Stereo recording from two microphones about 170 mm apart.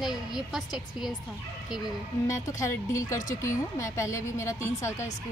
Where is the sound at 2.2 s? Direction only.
20° left (ahead or behind).